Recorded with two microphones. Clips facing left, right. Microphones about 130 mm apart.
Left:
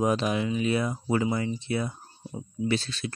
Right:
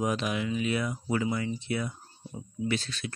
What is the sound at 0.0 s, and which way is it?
Speech, 35° left (ahead or behind).